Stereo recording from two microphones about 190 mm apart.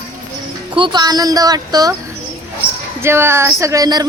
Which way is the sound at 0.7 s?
25° right (ahead or behind).